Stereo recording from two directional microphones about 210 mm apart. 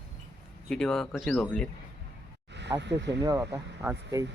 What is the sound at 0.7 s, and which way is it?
Speech, centre (ahead or behind).